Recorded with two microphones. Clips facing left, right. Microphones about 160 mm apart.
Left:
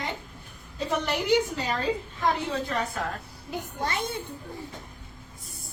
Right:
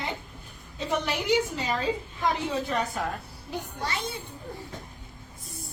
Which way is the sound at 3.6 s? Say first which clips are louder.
Left 2 dB; 55° left (ahead or behind).